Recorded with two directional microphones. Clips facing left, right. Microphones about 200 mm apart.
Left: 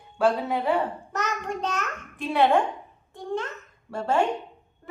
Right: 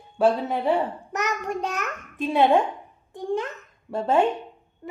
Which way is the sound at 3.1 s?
15° right (ahead or behind).